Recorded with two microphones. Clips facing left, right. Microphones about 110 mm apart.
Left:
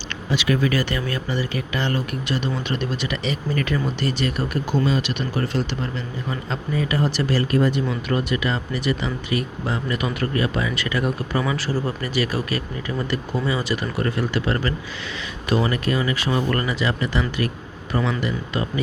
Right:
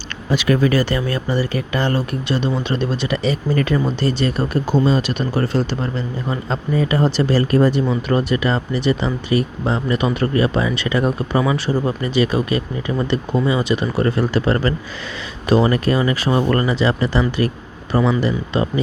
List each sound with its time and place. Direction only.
0.3 s speech: 45° right (ahead or behind)